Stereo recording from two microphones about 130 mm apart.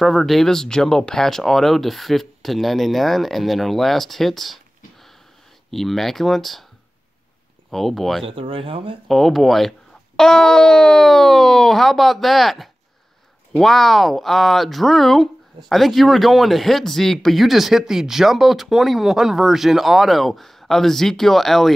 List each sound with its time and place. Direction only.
0.0 s speech: centre (ahead or behind)
5.7 s speech: centre (ahead or behind)
7.7 s speech: centre (ahead or behind)
8.3 s speech: 40° right (ahead or behind)
9.0 s speech: centre (ahead or behind)